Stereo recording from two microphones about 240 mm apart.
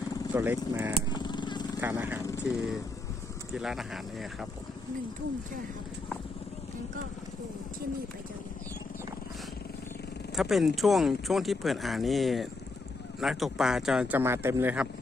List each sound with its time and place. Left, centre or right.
0.3 s speech: centre
1.1 s vehicle: centre
1.8 s speech: centre
10.3 s speech: centre